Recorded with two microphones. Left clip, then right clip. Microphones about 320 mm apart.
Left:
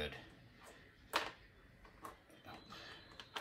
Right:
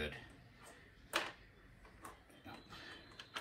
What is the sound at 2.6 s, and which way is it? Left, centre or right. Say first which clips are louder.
Tick-tock: left 1 dB; centre.